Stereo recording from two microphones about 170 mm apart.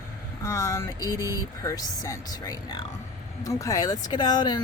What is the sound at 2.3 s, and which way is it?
Speech, 25° left (ahead or behind).